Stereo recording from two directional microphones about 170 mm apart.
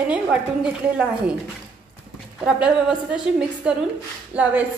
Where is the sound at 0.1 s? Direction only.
5° right (ahead or behind).